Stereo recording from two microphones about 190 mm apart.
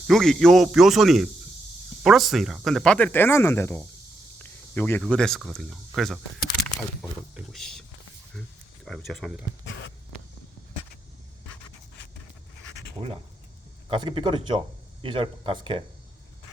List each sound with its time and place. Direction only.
0.1 s speech: centre (ahead or behind)
7.5 s speech: centre (ahead or behind)
9.6 s a sound: 65° left (ahead or behind)
13.9 s speech: 25° right (ahead or behind)